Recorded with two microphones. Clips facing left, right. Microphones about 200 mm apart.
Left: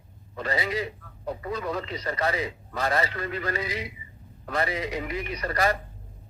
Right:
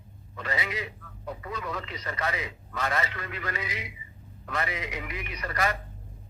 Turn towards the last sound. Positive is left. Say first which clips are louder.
# left 4 dB
turn(degrees=35)  # may be behind; listen again after turning